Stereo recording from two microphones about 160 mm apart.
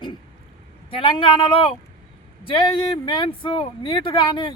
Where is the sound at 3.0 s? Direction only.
35° left (ahead or behind).